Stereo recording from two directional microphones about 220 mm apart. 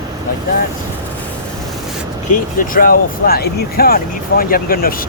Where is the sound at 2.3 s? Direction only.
40° left (ahead or behind).